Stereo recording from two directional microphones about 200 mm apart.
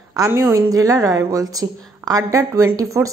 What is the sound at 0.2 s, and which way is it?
A woman's voice, 15° right (ahead or behind).